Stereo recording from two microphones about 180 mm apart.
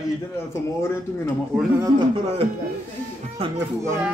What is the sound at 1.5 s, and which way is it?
Speech, 5° right (ahead or behind).